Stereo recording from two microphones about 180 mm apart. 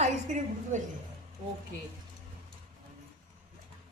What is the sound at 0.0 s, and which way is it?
Speech, 45° right (ahead or behind).